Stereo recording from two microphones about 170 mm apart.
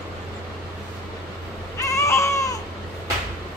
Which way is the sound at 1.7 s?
20° left (ahead or behind).